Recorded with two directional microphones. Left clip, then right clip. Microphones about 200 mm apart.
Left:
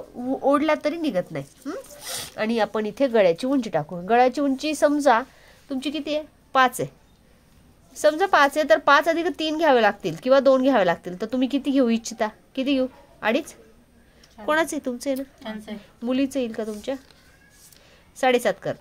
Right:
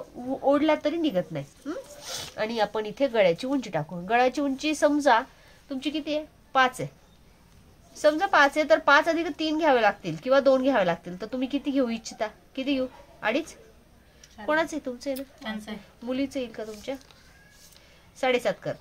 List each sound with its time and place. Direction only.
0.5 s a woman's voice: 50° left (ahead or behind)
7.9 s a woman's voice: 45° left (ahead or behind)
15.3 s a woman's voice: centre (ahead or behind)
16.1 s a woman's voice: 45° left (ahead or behind)
18.1 s a woman's voice: 45° left (ahead or behind)